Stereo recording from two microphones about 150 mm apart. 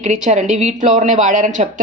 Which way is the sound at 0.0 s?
50° right (ahead or behind).